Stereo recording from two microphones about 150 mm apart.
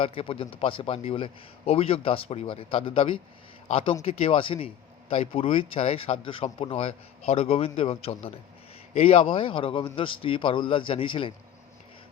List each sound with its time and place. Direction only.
0.0 s a man's voice: 40° left (ahead or behind)